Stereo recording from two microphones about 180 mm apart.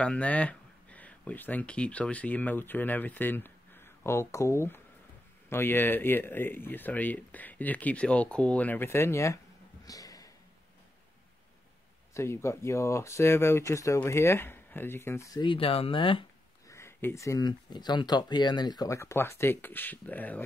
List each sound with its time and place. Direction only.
0.0 s speech: 5° left (ahead or behind)
9.8 s a sound: 20° left (ahead or behind)
12.1 s speech: 15° left (ahead or behind)
15.4 s speech: 30° left (ahead or behind)
16.6 s speech: 15° left (ahead or behind)